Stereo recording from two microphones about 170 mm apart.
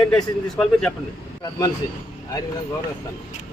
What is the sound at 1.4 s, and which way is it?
Speech, 20° left (ahead or behind).